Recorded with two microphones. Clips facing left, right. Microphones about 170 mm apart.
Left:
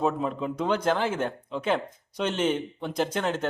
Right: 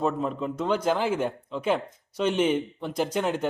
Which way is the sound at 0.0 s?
5° left (ahead or behind).